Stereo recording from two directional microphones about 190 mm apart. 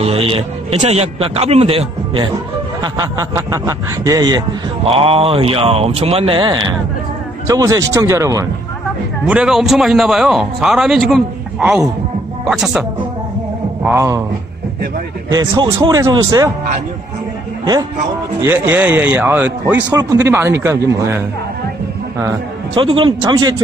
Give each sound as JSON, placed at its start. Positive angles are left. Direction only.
{"t": 0.0, "sound": "a man's voice", "side_deg": -30}
{"t": 9.2, "sound": "a man's voice", "side_deg": -5}
{"t": 13.8, "sound": "speech", "side_deg": -15}
{"t": 15.3, "sound": "speech", "side_deg": -25}
{"t": 18.4, "sound": "speech", "side_deg": -10}
{"t": 22.8, "sound": "speech", "side_deg": -25}